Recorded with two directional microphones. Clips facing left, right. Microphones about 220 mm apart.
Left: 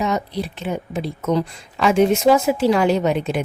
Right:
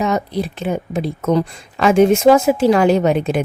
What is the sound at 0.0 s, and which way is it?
A woman's voice, 50° right (ahead or behind).